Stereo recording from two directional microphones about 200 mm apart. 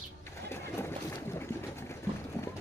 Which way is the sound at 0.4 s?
10° left (ahead or behind).